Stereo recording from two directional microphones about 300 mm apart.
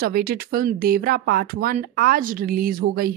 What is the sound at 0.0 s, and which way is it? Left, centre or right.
Speech, right.